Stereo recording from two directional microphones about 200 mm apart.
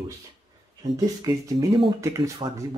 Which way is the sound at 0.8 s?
15° right (ahead or behind).